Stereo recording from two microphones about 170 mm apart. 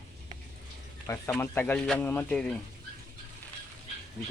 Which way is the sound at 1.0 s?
15° left (ahead or behind).